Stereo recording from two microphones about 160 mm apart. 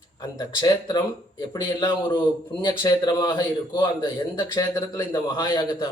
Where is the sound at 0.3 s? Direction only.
25° left (ahead or behind).